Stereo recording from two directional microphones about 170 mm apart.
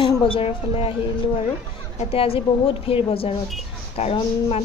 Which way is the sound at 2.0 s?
35° left (ahead or behind).